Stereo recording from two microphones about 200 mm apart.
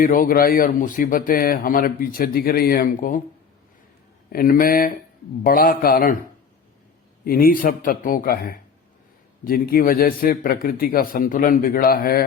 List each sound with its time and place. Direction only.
0.0 s a man's voice: 45° left (ahead or behind)
4.3 s a man's voice: 45° left (ahead or behind)
7.3 s a man's voice: 45° left (ahead or behind)